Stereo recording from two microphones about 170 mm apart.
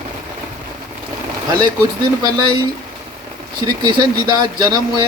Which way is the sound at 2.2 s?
25° right (ahead or behind).